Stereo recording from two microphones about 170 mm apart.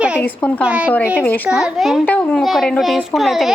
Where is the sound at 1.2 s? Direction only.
10° left (ahead or behind).